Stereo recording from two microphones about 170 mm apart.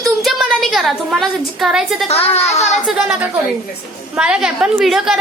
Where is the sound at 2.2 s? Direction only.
40° left (ahead or behind).